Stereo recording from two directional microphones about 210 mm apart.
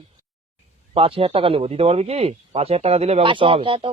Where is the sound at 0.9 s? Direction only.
25° right (ahead or behind).